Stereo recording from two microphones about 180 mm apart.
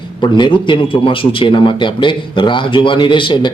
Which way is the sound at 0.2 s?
25° left (ahead or behind).